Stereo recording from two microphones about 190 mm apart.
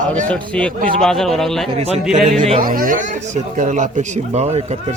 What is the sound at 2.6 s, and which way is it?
Speech, 45° right (ahead or behind).